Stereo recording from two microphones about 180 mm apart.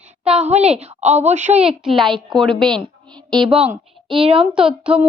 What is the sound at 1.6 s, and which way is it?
Speech, centre (ahead or behind).